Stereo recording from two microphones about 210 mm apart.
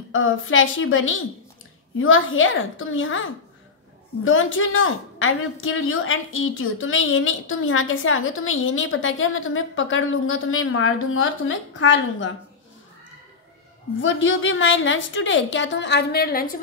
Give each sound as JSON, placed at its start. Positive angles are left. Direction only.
{"t": 0.1, "sound": "a woman's voice", "side_deg": 70}
{"t": 14.0, "sound": "a woman's voice", "side_deg": 60}